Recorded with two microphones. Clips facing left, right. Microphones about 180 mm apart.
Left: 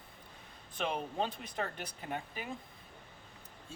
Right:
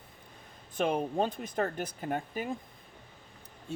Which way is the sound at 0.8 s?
50° right (ahead or behind).